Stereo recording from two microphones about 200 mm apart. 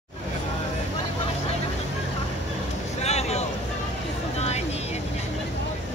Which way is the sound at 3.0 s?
35° left (ahead or behind).